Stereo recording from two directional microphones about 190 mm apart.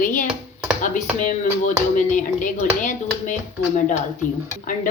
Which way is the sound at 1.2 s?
45° left (ahead or behind).